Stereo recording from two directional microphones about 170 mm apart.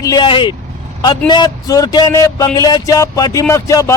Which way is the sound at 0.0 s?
25° left (ahead or behind).